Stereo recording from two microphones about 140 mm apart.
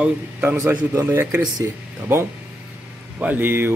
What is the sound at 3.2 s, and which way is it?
Speech, 15° right (ahead or behind).